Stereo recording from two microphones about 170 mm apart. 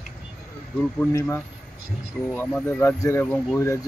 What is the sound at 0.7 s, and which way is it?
Speech, 10° left (ahead or behind).